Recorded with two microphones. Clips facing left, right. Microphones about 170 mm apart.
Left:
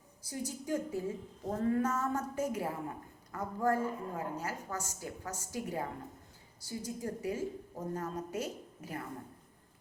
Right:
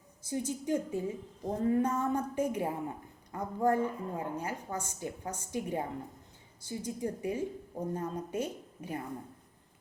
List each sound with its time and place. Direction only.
0.2 s a woman's voice: 20° right (ahead or behind)